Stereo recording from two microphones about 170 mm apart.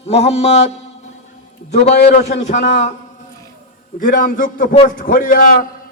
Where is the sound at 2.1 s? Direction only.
40° left (ahead or behind).